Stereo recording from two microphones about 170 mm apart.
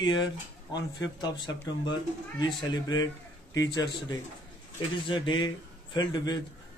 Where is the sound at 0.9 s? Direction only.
25° left (ahead or behind).